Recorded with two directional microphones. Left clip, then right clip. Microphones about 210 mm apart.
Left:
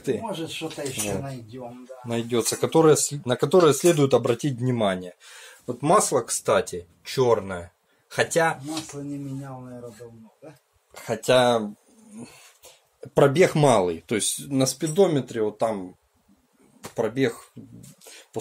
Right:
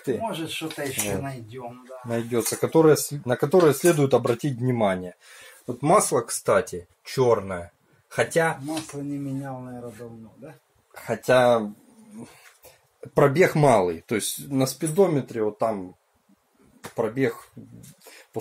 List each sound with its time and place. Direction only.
0.2 s speech: 20° right (ahead or behind)
2.0 s speech: centre (ahead or behind)
8.9 s speech: 20° right (ahead or behind)
11.1 s speech: centre (ahead or behind)
12.2 s a sound: centre (ahead or behind)
13.4 s speech: centre (ahead or behind)
16.8 s speech: 5° left (ahead or behind)